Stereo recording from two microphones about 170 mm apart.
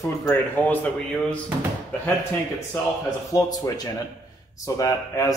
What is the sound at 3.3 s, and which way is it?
A man's voice, 20° left (ahead or behind).